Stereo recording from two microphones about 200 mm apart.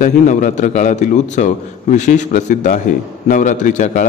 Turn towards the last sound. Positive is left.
turn(degrees=40)  # may be behind; listen again after turning